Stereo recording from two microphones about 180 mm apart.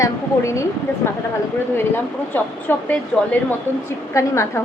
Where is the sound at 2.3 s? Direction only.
10° left (ahead or behind).